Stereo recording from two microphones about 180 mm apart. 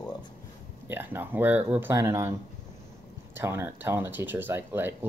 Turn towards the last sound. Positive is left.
turn(degrees=-10)  # may be behind; listen again after turning